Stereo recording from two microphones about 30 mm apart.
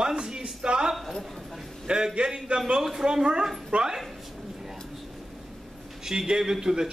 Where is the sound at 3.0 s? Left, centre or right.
Right.